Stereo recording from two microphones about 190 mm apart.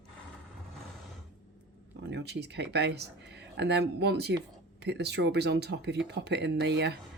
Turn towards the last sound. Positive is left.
turn(degrees=-60)  # may be behind; listen again after turning